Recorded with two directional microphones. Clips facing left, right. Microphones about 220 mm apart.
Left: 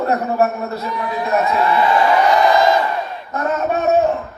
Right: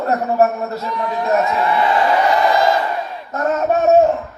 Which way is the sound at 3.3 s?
45° right (ahead or behind).